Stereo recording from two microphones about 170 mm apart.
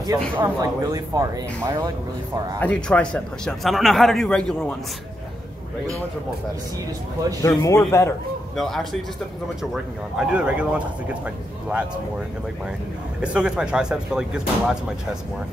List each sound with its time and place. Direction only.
0.4 s speech: 20° right (ahead or behind)
2.6 s a man's voice: 5° left (ahead or behind)
7.4 s a man's voice: 15° left (ahead or behind)
8.5 s a man's voice: centre (ahead or behind)
13.2 s a man's voice: 5° right (ahead or behind)